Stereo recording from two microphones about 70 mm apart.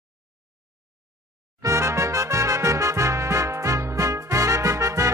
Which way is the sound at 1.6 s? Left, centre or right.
Right.